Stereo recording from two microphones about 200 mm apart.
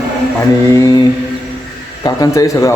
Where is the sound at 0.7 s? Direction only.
20° left (ahead or behind).